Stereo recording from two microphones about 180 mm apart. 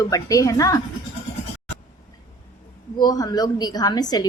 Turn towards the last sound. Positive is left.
turn(degrees=20)  # may be behind; listen again after turning